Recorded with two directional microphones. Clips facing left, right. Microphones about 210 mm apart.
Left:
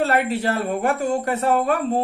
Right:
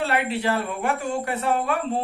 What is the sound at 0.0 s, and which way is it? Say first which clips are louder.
Speech: left 3 dB; 45° left (ahead or behind).